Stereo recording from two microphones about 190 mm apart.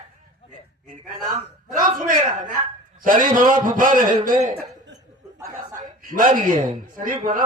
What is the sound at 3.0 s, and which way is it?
A man's voice, 45° right (ahead or behind).